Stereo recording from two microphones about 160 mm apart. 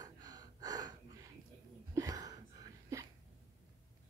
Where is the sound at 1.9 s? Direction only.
20° right (ahead or behind).